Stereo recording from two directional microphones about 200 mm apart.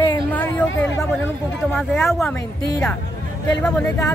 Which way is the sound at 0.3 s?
10° left (ahead or behind).